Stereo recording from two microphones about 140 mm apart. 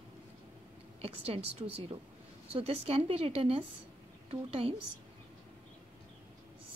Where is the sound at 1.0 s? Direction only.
45° right (ahead or behind).